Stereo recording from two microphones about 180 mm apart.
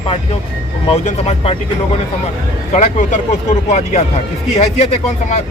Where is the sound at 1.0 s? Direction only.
35° left (ahead or behind).